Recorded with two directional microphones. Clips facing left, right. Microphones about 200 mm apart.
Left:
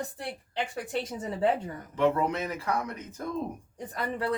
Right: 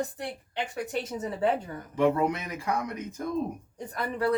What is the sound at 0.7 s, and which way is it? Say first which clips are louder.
Speech: right 1 dB; 30° left (ahead or behind).